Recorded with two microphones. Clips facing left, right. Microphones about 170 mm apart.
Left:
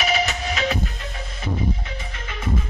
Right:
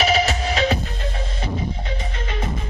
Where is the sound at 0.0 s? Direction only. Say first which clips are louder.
Right 4 dB; 35° right (ahead or behind).